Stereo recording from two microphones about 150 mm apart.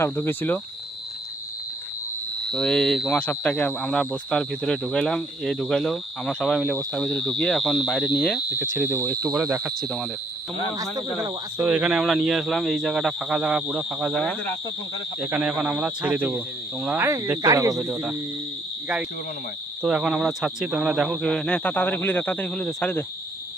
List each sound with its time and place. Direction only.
0.0 s speech: 15° left (ahead or behind)
2.4 s speech: centre (ahead or behind)
9.6 s speech: 5° left (ahead or behind)
11.2 s speech: 15° right (ahead or behind)
19.8 s speech: 5° right (ahead or behind)